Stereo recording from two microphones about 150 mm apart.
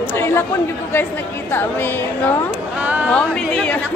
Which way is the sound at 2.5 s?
10° right (ahead or behind).